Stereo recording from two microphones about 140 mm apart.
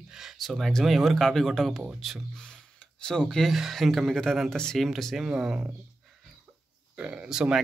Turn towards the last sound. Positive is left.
turn(degrees=-5)  # may be behind; listen again after turning